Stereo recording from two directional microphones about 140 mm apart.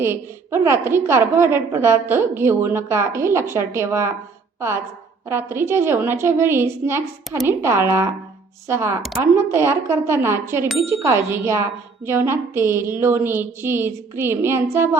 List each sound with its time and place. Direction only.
0.0 s a woman's voice: 15° right (ahead or behind)
5.3 s a woman's voice: 15° right (ahead or behind)